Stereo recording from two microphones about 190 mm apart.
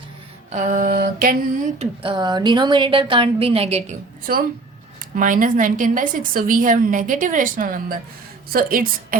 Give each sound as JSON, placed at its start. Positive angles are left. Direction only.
{"t": 0.5, "sound": "a woman's voice", "side_deg": -45}
{"t": 1.8, "sound": "a woman's voice", "side_deg": -30}
{"t": 5.1, "sound": "a woman's voice", "side_deg": -45}